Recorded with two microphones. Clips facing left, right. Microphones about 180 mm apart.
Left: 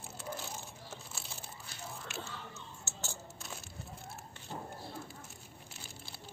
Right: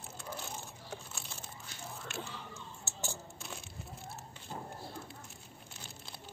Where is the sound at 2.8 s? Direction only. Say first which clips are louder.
Right 4 dB; 15° right (ahead or behind).